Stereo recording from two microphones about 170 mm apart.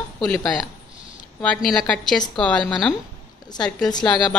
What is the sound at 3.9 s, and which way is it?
Speech, 25° left (ahead or behind).